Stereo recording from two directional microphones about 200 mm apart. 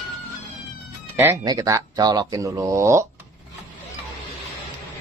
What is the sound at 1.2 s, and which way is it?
Speech, 15° right (ahead or behind).